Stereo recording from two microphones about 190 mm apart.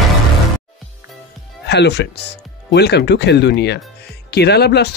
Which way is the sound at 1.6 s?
60° left (ahead or behind).